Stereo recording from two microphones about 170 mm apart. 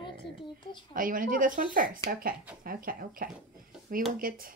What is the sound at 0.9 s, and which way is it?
Speech, 55° right (ahead or behind).